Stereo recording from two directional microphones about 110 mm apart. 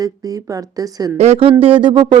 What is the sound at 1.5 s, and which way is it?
Speech, 55° right (ahead or behind).